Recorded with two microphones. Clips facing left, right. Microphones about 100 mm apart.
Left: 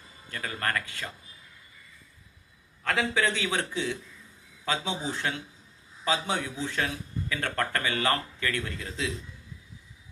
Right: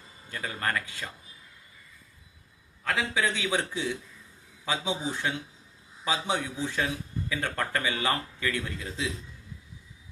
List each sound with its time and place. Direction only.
0.3 s a man's voice: 15° right (ahead or behind)
2.8 s a man's voice: 15° right (ahead or behind)
4.6 s a man's voice: 15° right (ahead or behind)